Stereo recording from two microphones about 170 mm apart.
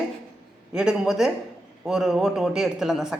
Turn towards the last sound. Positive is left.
turn(degrees=-5)  # may be behind; listen again after turning